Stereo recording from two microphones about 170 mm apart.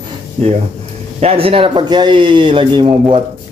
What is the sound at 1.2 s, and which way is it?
Speech, 35° right (ahead or behind).